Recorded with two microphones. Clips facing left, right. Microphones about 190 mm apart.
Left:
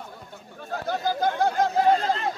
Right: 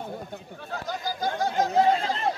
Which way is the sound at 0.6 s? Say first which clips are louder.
Left 5 dB; 50° left (ahead or behind).